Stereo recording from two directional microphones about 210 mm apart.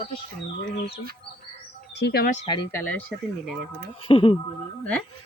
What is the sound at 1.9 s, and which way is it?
Speech, 50° left (ahead or behind).